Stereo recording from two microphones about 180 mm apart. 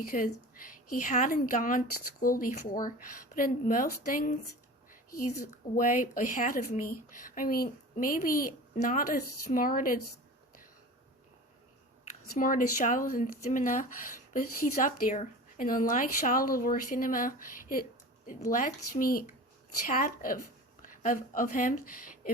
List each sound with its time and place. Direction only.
0.1 s speech: 50° left (ahead or behind)
12.4 s speech: 50° left (ahead or behind)